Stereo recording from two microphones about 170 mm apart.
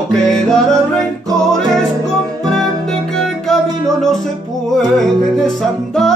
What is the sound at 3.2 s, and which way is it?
Music, centre (ahead or behind).